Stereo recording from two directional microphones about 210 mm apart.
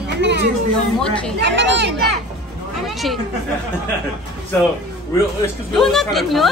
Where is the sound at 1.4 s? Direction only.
55° right (ahead or behind).